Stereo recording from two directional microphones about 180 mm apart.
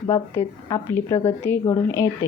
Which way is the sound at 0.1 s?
15° left (ahead or behind).